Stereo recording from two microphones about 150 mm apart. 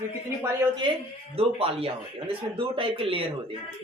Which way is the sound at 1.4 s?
40° right (ahead or behind).